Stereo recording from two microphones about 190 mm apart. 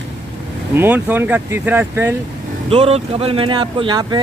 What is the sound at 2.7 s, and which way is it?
Speech, 30° right (ahead or behind).